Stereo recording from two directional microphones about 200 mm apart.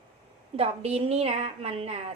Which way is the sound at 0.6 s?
30° right (ahead or behind).